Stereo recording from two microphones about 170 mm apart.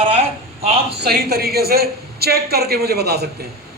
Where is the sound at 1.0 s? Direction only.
65° right (ahead or behind).